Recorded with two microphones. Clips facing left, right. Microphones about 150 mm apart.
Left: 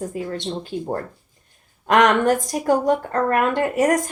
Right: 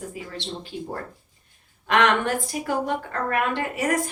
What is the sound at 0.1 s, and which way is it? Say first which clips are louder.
A woman's voice: left 7 dB; 50° left (ahead or behind).